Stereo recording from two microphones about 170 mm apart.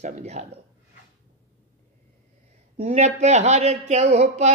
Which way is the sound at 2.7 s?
40° right (ahead or behind).